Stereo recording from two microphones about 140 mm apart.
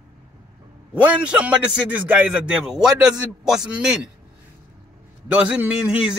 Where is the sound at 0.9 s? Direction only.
10° right (ahead or behind).